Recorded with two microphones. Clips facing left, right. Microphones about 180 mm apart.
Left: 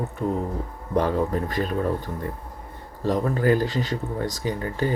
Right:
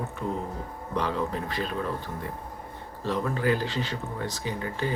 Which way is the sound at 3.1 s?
45° left (ahead or behind).